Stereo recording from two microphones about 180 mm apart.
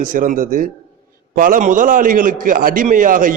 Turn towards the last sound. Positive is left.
turn(degrees=-50)  # may be behind; listen again after turning